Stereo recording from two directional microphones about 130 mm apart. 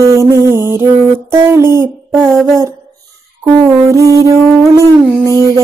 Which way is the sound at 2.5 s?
20° right (ahead or behind).